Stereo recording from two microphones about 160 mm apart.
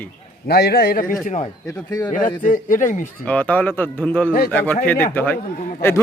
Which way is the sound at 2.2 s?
55° left (ahead or behind).